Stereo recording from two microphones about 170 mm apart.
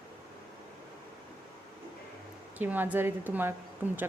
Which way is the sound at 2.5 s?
10° right (ahead or behind).